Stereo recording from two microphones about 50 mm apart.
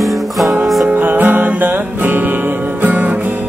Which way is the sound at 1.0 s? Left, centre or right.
Right.